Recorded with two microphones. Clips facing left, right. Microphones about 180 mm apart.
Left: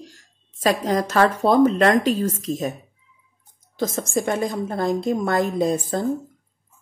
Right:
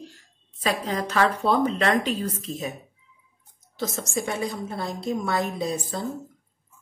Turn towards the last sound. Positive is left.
turn(degrees=50)  # may be behind; listen again after turning